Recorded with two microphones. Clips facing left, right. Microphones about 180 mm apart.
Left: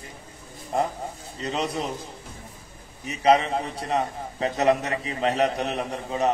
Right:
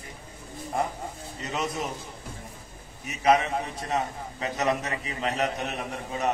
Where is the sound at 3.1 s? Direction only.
35° left (ahead or behind).